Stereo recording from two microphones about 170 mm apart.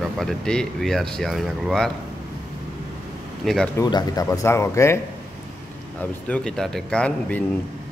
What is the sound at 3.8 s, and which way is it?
Speech, 20° left (ahead or behind).